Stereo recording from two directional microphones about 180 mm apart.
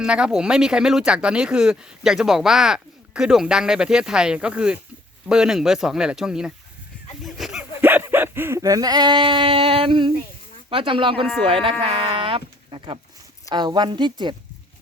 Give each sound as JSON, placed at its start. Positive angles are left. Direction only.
{"t": 0.0, "sound": "speech", "side_deg": -5}
{"t": 7.3, "sound": "a sound", "side_deg": 0}
{"t": 7.8, "sound": "a woman's voice", "side_deg": -10}